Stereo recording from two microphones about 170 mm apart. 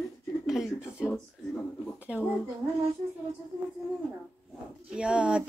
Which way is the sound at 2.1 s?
5° right (ahead or behind).